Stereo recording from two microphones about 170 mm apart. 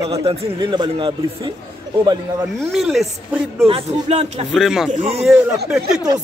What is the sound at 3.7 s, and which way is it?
Speech, 35° right (ahead or behind).